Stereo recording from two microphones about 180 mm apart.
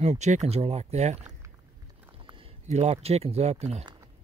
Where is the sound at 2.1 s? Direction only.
30° right (ahead or behind).